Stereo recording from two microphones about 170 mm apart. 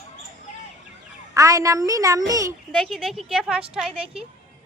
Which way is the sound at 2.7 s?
Centre (ahead or behind).